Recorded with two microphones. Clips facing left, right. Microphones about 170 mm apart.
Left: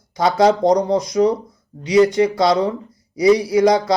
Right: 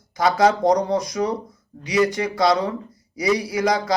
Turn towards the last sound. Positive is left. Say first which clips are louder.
# left 6 dB
turn(degrees=25)  # may be behind; listen again after turning